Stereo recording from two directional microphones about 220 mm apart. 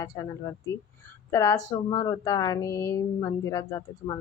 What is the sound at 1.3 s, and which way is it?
Speech, 15° left (ahead or behind).